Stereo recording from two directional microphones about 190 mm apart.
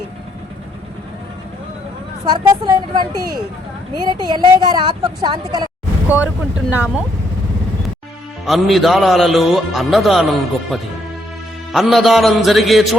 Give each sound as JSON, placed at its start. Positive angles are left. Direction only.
{"t": 2.2, "sound": "a woman's voice", "side_deg": -20}
{"t": 6.1, "sound": "speech", "side_deg": -5}
{"t": 8.4, "sound": "a man's voice", "side_deg": 0}